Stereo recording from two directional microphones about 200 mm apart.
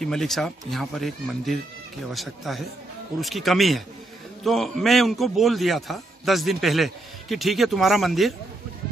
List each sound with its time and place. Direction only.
0.0 s a man's voice: centre (ahead or behind)